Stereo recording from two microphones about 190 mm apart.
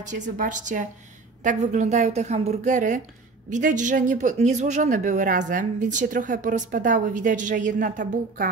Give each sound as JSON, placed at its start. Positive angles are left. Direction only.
{"t": 0.1, "sound": "speech", "side_deg": -40}